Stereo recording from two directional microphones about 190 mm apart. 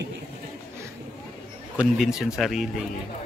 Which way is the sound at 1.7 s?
5° right (ahead or behind).